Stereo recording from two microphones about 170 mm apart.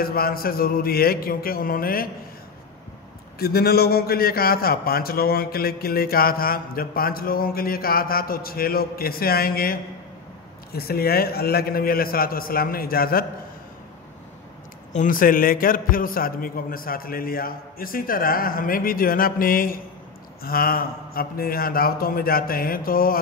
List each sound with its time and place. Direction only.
0.0 s a man's voice: 60° left (ahead or behind)
3.3 s a man's voice: 65° left (ahead or behind)
14.9 s a man's voice: 50° left (ahead or behind)